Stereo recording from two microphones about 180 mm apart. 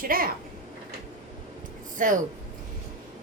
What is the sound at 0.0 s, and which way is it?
Speech, 55° right (ahead or behind).